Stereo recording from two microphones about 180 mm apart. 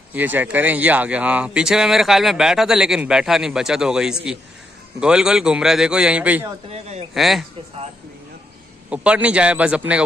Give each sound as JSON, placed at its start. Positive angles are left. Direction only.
{"t": 0.1, "sound": "speech", "side_deg": -10}
{"t": 6.7, "sound": "speech", "side_deg": -35}
{"t": 7.2, "sound": "speech", "side_deg": 0}
{"t": 8.9, "sound": "a man's voice", "side_deg": -5}